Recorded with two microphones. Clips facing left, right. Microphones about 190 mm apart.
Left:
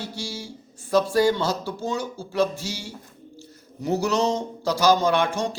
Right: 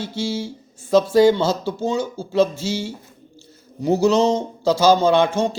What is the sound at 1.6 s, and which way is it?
A man's voice, 20° right (ahead or behind).